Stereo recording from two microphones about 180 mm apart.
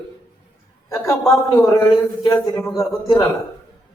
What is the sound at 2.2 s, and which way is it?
A man's voice, 15° left (ahead or behind).